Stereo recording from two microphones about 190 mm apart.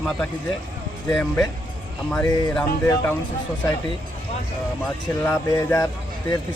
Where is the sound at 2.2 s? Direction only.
20° left (ahead or behind).